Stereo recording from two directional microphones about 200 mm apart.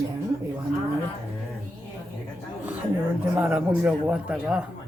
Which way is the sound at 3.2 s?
5° right (ahead or behind).